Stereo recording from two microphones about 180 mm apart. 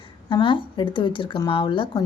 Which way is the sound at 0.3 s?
30° left (ahead or behind).